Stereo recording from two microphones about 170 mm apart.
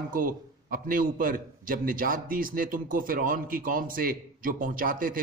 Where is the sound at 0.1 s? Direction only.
55° right (ahead or behind).